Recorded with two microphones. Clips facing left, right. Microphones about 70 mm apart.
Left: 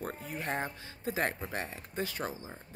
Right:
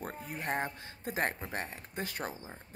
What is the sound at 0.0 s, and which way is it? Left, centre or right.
Speech, right.